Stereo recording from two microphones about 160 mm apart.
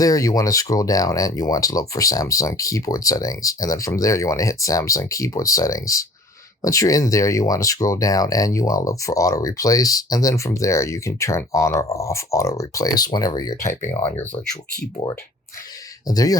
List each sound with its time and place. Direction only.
0.0 s speech: 20° left (ahead or behind)
16.0 s speech: 25° left (ahead or behind)